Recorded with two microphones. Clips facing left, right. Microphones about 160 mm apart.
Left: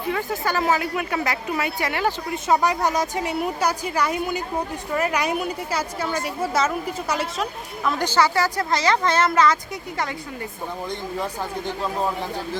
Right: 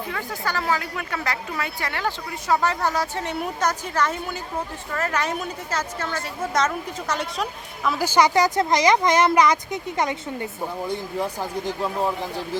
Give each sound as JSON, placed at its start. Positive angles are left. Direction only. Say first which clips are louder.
{"t": 0.1, "sound": "a woman's voice", "louder": "left 6 dB", "side_deg": 20}
{"t": 7.9, "sound": "speech", "louder": "right 1 dB", "side_deg": -5}